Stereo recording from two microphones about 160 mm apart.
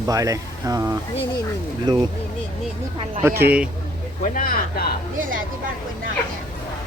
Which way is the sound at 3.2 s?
15° right (ahead or behind).